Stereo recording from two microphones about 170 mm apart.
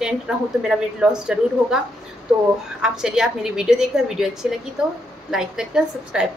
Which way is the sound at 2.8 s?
5° right (ahead or behind).